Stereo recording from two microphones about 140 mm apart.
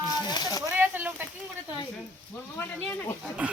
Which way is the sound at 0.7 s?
15° right (ahead or behind).